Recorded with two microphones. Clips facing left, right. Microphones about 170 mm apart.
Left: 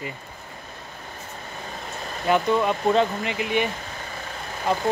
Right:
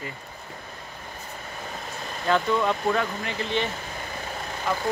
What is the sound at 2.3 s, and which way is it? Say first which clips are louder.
Speech: left 2 dB; 20° left (ahead or behind).